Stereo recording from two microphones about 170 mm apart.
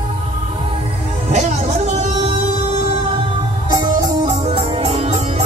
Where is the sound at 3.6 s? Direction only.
25° right (ahead or behind).